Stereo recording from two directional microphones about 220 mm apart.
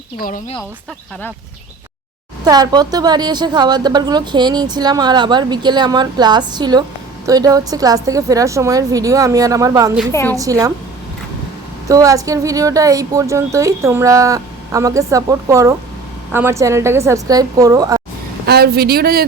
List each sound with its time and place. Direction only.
0.2 s a woman's voice: 40° left (ahead or behind)
2.4 s a woman's voice: 20° right (ahead or behind)
10.1 s a woman's voice: 10° left (ahead or behind)
10.3 s a woman's voice: 15° right (ahead or behind)
11.9 s a woman's voice: 15° right (ahead or behind)
18.4 s speech: 45° right (ahead or behind)